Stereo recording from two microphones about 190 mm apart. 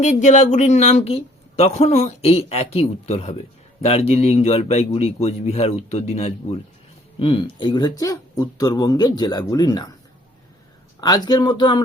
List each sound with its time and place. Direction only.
0.0 s speech: 40° left (ahead or behind); by 9.8 s 20° left (ahead or behind)
11.0 s speech: 20° left (ahead or behind)